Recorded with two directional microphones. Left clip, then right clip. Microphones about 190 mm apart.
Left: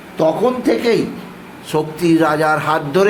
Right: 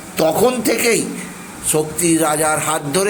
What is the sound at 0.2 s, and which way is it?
Speech, 20° right (ahead or behind).